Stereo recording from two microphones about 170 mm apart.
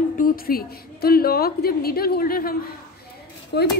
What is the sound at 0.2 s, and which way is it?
A woman's voice, 60° left (ahead or behind).